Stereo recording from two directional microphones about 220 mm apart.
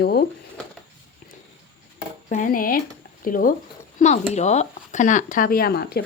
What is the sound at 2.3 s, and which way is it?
Speech, 35° left (ahead or behind).